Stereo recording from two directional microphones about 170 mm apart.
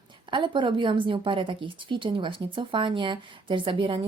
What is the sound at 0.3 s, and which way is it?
A woman's voice, 30° right (ahead or behind).